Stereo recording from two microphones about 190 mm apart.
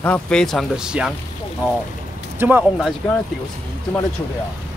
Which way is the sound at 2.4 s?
10° right (ahead or behind).